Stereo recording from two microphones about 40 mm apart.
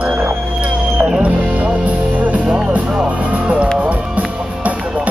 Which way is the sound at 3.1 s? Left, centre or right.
Right.